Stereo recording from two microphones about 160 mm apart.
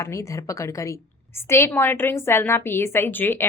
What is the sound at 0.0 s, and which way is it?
A woman's voice, 20° left (ahead or behind).